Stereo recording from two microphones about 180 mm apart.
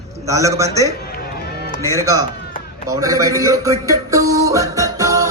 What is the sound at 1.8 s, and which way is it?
Speech, 15° left (ahead or behind).